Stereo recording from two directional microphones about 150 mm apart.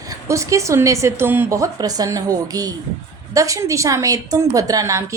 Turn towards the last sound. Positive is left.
turn(degrees=-20)  # may be behind; listen again after turning